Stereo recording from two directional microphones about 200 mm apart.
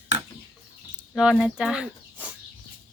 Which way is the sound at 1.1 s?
5° right (ahead or behind).